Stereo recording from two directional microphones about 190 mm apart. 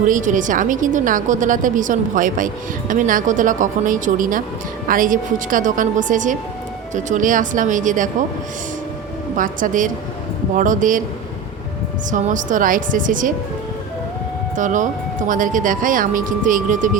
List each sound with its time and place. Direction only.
0.0 s a woman's voice: 40° right (ahead or behind)
9.3 s a woman's voice: 45° right (ahead or behind)
12.1 s a woman's voice: 40° right (ahead or behind)
14.5 s a woman's voice: 40° right (ahead or behind)